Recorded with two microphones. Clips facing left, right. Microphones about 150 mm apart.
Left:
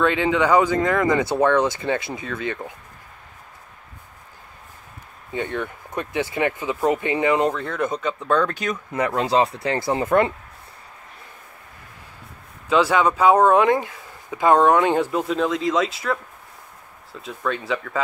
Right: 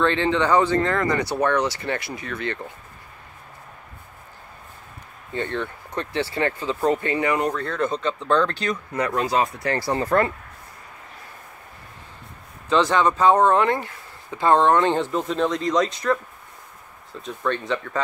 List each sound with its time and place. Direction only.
0.0 s speech: 10° left (ahead or behind)
5.3 s speech: 10° left (ahead or behind)
12.6 s speech: 10° left (ahead or behind)